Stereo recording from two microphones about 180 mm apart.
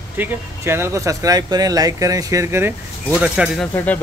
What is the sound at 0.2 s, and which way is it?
Speech, 15° right (ahead or behind).